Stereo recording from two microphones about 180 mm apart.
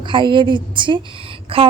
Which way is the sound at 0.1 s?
25° right (ahead or behind).